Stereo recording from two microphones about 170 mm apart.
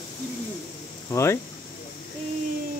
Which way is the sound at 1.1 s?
15° left (ahead or behind).